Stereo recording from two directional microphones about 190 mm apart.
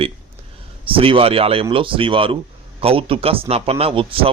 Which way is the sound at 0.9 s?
30° right (ahead or behind).